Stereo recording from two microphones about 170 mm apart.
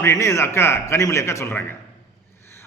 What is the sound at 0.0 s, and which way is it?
A man's voice, 15° left (ahead or behind).